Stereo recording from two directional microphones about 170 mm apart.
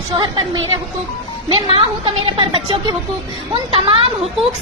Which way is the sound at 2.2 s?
30° right (ahead or behind).